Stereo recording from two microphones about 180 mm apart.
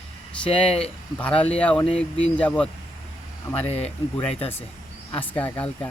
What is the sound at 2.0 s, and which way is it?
Speech, 5° left (ahead or behind).